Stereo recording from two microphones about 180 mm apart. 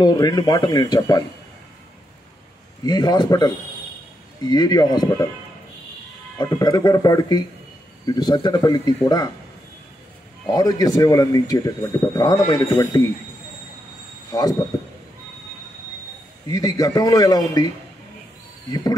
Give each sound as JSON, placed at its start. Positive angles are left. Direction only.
{"t": 0.0, "sound": "speech", "side_deg": 20}
{"t": 2.8, "sound": "speech", "side_deg": 20}
{"t": 6.3, "sound": "speech", "side_deg": 20}
{"t": 10.4, "sound": "speech", "side_deg": 20}
{"t": 14.3, "sound": "speech", "side_deg": 20}
{"t": 16.4, "sound": "speech", "side_deg": 20}